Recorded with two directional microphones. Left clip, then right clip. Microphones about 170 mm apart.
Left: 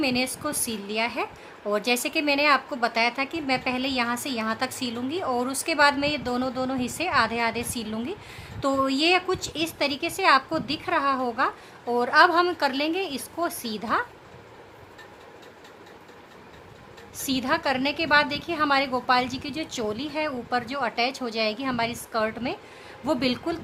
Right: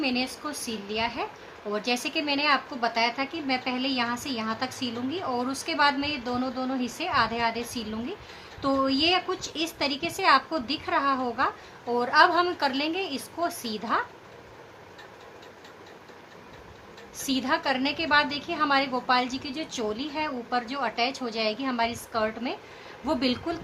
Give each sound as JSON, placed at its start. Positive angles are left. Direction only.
{"t": 0.0, "sound": "a woman's voice", "side_deg": 60}
{"t": 17.2, "sound": "a woman's voice", "side_deg": 60}